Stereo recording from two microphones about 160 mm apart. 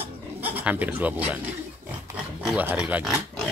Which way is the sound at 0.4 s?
10° right (ahead or behind).